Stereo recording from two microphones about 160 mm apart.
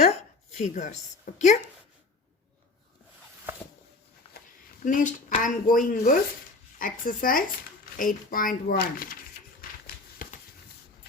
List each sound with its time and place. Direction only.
0.5 s speech: 50° left (ahead or behind)
4.8 s speech: 55° left (ahead or behind); by 9.1 s 70° left (ahead or behind)
9.6 s a sound: 65° left (ahead or behind)